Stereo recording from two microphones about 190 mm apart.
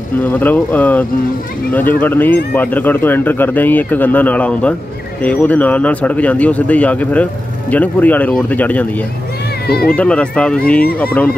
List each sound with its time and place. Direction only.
0.2 s speech: 10° left (ahead or behind)
9.7 s speech: 55° left (ahead or behind)
9.9 s speech: 5° left (ahead or behind)